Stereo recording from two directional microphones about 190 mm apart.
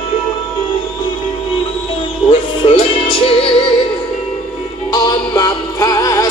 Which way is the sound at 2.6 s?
30° left (ahead or behind).